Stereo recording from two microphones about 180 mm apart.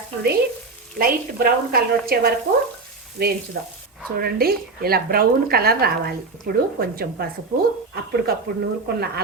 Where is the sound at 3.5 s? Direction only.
60° right (ahead or behind).